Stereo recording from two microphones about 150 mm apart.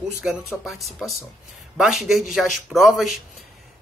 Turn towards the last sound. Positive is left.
turn(degrees=0)  # may be behind; listen again after turning